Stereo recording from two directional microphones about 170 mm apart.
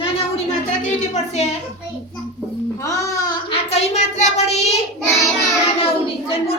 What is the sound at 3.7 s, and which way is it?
Child singing, 40° left (ahead or behind).